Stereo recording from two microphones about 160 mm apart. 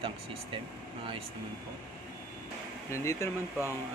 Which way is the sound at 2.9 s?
15° left (ahead or behind).